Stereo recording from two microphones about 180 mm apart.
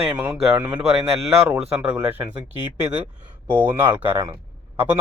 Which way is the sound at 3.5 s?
10° right (ahead or behind).